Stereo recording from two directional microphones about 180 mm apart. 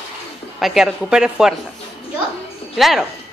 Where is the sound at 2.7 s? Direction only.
Centre (ahead or behind).